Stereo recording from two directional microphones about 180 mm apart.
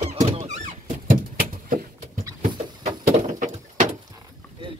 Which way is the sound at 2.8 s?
45° right (ahead or behind).